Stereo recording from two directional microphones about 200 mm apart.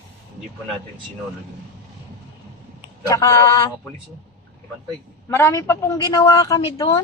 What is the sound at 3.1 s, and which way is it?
Speech, 15° left (ahead or behind).